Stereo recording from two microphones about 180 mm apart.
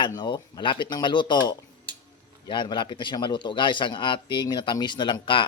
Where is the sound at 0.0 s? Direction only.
25° left (ahead or behind).